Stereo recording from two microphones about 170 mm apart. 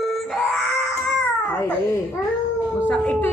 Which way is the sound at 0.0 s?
Centre (ahead or behind).